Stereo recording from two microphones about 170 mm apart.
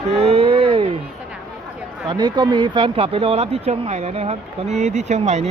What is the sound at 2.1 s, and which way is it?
Speech, 25° right (ahead or behind).